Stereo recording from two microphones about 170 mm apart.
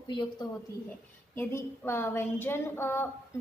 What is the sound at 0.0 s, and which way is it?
Speech, 25° left (ahead or behind).